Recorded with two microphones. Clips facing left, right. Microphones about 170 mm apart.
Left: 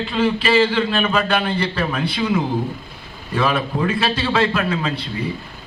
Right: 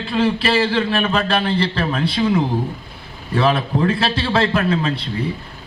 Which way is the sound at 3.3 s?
30° right (ahead or behind).